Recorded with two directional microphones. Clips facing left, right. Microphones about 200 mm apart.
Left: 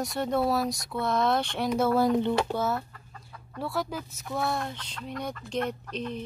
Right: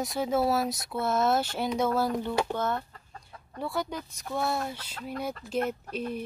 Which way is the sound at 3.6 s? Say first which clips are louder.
Left 1 dB; centre (ahead or behind).